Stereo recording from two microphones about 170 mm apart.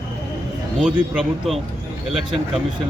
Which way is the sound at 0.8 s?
Centre (ahead or behind).